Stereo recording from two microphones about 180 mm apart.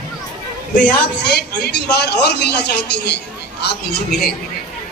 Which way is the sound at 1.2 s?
65° left (ahead or behind).